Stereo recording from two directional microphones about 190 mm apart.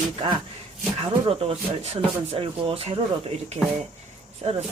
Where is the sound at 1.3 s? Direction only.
30° right (ahead or behind).